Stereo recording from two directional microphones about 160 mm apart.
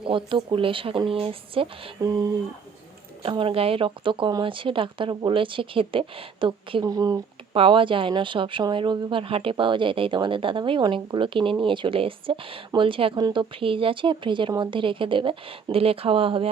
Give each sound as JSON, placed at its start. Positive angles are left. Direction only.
{"t": 0.0, "sound": "speech", "side_deg": -30}
{"t": 3.2, "sound": "speech", "side_deg": -35}
{"t": 7.5, "sound": "speech", "side_deg": -35}